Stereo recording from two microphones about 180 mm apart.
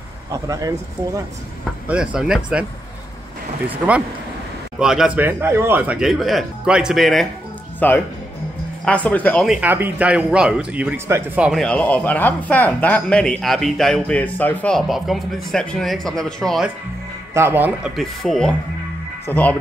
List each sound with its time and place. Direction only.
0.3 s speech: 20° right (ahead or behind)
1.9 s a man's voice: 5° right (ahead or behind)
4.7 s a man's voice: 5° right (ahead or behind)
9.5 s a man's voice: 10° right (ahead or behind)
17.3 s speech: 15° right (ahead or behind); by 19.5 s 10° left (ahead or behind)